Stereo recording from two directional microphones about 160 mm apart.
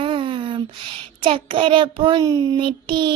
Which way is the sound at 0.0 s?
30° right (ahead or behind).